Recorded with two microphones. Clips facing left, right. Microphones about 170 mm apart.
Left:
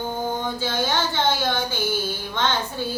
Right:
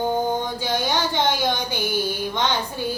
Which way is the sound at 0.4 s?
15° right (ahead or behind).